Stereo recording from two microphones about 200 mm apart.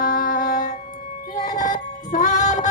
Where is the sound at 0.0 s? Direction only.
40° left (ahead or behind).